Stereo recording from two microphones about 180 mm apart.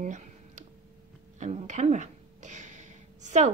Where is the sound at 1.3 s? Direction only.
40° right (ahead or behind).